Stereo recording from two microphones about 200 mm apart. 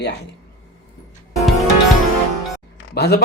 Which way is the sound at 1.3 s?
Centre (ahead or behind).